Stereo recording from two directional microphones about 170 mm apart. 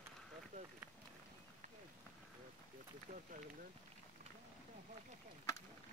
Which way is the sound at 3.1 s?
45° right (ahead or behind).